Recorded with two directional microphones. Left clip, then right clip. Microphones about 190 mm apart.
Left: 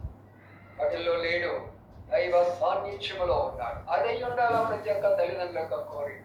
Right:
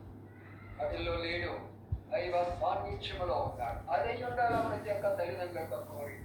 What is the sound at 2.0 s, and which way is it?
A man's voice, 40° left (ahead or behind).